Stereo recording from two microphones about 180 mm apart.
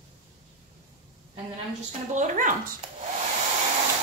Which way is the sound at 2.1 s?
45° right (ahead or behind).